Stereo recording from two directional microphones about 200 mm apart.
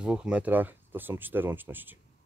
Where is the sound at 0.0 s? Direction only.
5° right (ahead or behind).